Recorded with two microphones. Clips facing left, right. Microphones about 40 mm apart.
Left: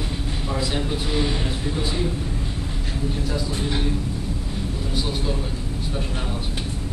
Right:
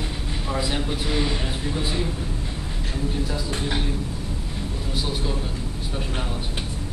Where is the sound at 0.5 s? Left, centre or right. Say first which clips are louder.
Even; centre.